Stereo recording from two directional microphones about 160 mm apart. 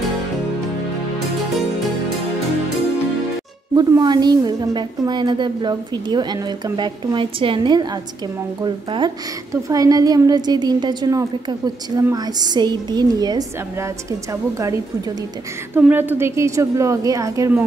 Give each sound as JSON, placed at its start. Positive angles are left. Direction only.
{"t": 3.7, "sound": "a woman's voice", "side_deg": -25}
{"t": 15.8, "sound": "a woman's voice", "side_deg": -10}